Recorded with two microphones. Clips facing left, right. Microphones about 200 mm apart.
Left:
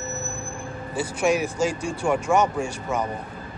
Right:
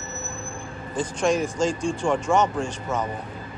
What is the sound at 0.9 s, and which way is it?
Speech, 10° left (ahead or behind).